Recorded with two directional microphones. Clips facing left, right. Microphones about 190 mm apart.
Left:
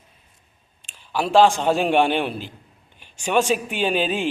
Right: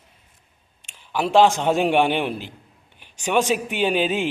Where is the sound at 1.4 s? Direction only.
20° right (ahead or behind).